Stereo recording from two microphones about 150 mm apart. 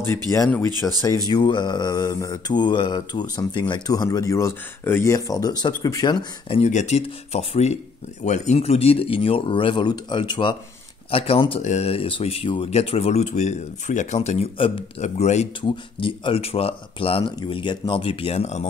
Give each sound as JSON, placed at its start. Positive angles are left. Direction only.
{"t": 0.0, "sound": "mantra", "side_deg": 20}
{"t": 0.8, "sound": "speech", "side_deg": 5}
{"t": 1.3, "sound": "mantra", "side_deg": 30}
{"t": 6.6, "sound": "speech", "side_deg": 50}
{"t": 11.6, "sound": "speech", "side_deg": 45}
{"t": 13.2, "sound": "speech", "side_deg": 50}
{"t": 15.7, "sound": "speech", "side_deg": 35}